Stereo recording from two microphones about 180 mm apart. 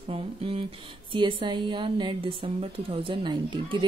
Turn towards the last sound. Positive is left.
turn(degrees=-25)  # may be behind; listen again after turning